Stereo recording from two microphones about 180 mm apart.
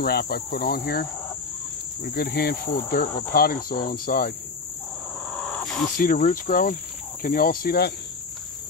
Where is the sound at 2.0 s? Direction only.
60° left (ahead or behind).